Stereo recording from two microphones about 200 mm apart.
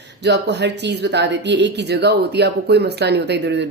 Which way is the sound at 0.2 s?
60° right (ahead or behind).